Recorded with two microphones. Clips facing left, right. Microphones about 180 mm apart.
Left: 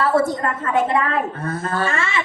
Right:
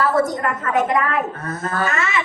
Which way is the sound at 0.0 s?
30° left (ahead or behind).